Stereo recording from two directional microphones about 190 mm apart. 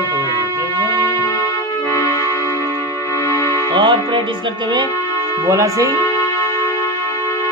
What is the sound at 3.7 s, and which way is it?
Speech, 25° right (ahead or behind).